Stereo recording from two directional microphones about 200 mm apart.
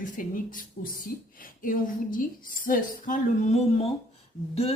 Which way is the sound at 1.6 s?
45° left (ahead or behind).